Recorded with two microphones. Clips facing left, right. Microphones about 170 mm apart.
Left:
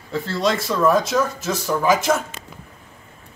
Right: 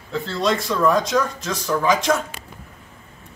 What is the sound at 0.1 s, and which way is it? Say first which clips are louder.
Speech: even; 5° left (ahead or behind).